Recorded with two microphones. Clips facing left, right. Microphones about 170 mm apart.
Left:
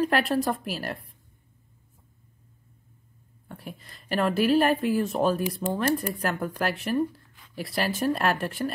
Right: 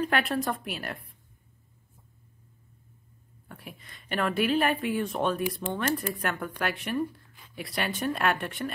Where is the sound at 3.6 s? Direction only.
Centre (ahead or behind).